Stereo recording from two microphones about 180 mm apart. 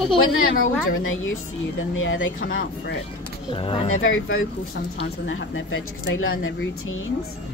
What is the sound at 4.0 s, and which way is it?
Speech, 90° left.